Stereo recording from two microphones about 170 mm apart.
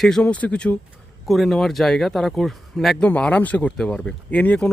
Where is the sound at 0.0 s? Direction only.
5° left (ahead or behind).